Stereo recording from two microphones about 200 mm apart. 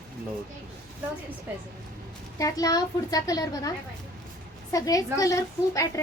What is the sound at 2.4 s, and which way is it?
A child's voice, 15° left (ahead or behind).